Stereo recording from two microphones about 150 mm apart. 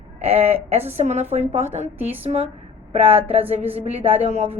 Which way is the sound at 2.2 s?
45° right (ahead or behind).